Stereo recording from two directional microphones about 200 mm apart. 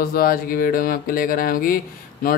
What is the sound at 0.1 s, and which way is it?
A man's voice, 45° left (ahead or behind).